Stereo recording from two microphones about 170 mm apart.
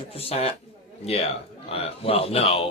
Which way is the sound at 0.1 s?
35° left (ahead or behind).